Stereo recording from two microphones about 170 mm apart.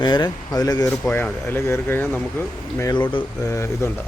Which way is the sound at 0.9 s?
10° left (ahead or behind).